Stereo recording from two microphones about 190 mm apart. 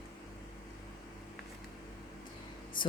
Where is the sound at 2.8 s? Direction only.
25° left (ahead or behind).